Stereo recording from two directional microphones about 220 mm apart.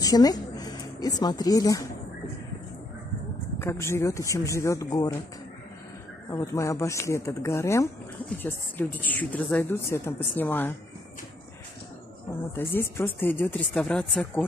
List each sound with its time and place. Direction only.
0.0 s speech: 15° left (ahead or behind)
3.5 s a woman's voice: 10° left (ahead or behind)
6.3 s a woman's voice: 15° left (ahead or behind)
12.3 s a woman's voice: 10° left (ahead or behind)